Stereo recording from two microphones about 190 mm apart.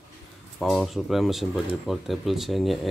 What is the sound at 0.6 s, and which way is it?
Speech, centre (ahead or behind).